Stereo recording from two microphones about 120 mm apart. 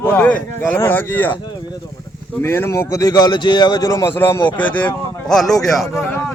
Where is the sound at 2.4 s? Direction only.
20° left (ahead or behind); by 6.1 s centre (ahead or behind).